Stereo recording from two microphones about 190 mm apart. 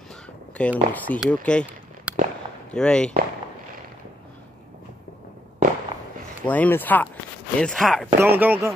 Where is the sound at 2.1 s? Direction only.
10° right (ahead or behind).